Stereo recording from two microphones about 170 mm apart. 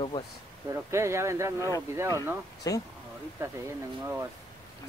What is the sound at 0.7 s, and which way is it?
Speech, 15° right (ahead or behind).